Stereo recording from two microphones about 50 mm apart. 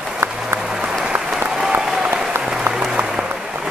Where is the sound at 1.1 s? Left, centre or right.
Right.